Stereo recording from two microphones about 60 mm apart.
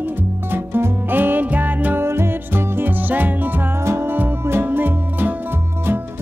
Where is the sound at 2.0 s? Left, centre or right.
Right.